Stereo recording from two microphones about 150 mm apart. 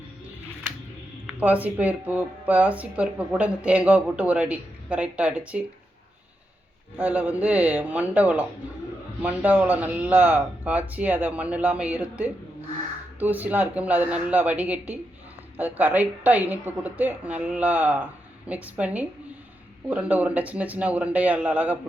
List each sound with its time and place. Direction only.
1.3 s speech: 10° right (ahead or behind)
6.9 s speech: 10° right (ahead or behind)